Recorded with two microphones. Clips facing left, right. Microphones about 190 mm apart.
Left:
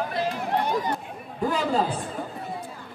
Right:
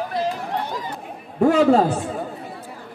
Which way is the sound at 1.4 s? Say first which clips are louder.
Right 9 dB; 75° right (ahead or behind).